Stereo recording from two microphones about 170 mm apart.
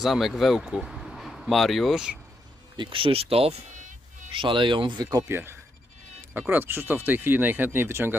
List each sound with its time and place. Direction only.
0.0 s speech: centre (ahead or behind)
2.7 s insect: 30° right (ahead or behind); by 4.3 s 45° right (ahead or behind)
4.4 s speech: 30° right (ahead or behind)
5.1 s speech: 15° right (ahead or behind)